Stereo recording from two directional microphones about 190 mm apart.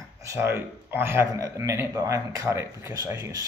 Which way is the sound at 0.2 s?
15° right (ahead or behind).